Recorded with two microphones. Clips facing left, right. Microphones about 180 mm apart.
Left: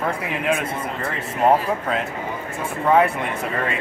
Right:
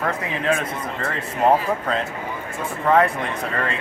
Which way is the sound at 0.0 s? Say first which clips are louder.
Even; 5° left (ahead or behind).